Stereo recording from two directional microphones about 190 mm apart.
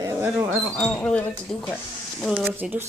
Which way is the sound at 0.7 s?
5° left (ahead or behind).